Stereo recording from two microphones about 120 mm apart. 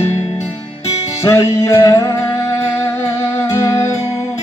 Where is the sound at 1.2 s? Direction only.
25° left (ahead or behind).